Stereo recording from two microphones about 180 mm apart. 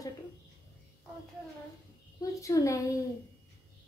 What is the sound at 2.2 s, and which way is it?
Speech, 20° left (ahead or behind).